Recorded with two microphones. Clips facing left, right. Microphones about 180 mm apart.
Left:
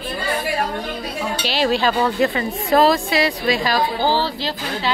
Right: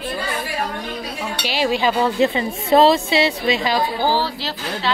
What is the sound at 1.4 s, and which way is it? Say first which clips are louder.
A woman's voice: even; 10° right (ahead or behind).